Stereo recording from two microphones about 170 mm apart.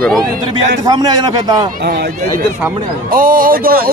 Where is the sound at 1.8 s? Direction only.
70° right (ahead or behind).